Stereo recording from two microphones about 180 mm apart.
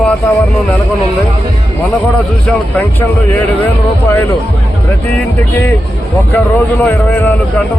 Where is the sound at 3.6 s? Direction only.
10° left (ahead or behind).